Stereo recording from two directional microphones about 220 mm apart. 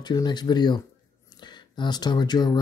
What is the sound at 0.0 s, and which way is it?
Speech, 20° left (ahead or behind).